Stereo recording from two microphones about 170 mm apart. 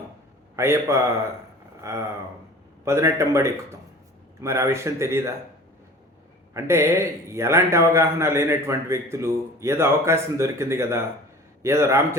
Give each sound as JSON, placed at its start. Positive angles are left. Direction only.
{"t": 0.5, "sound": "a man's voice", "side_deg": -15}
{"t": 1.8, "sound": "a sound", "side_deg": -15}
{"t": 2.8, "sound": "a man's voice", "side_deg": -15}
{"t": 6.5, "sound": "a man's voice", "side_deg": -15}